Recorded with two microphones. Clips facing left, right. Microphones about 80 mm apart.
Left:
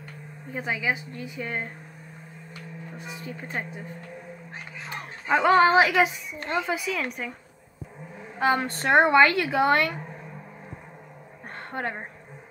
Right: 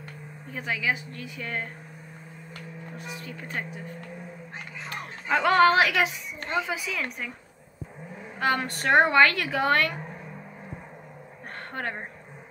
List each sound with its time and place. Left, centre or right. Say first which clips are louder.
0.5 s a woman's voice: left 1 dB; centre
3.0 s a woman's voice: left 2 dB; centre
4.8 s speech: left 2 dB; centre
6.5 s speech: left 2 dB; centre
8.4 s a woman's voice: left 3 dB; centre
11.7 s a woman's voice: left 2 dB; centre